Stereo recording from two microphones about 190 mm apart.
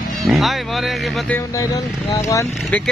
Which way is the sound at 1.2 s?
10° left (ahead or behind).